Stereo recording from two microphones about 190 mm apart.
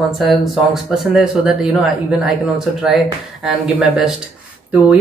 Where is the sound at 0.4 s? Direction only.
Centre (ahead or behind).